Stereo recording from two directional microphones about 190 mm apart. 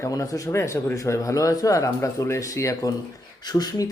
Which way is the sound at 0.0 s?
15° left (ahead or behind).